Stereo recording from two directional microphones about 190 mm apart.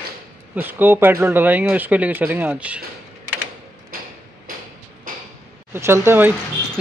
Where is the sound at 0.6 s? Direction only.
10° right (ahead or behind).